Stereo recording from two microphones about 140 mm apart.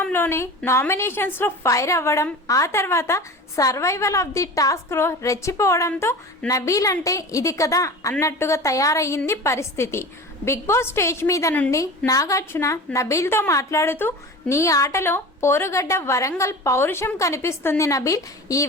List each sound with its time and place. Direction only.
0.0 s a woman's voice: 15° left (ahead or behind)